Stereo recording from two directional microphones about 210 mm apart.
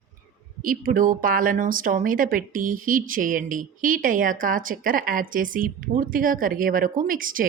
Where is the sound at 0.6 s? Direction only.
40° right (ahead or behind).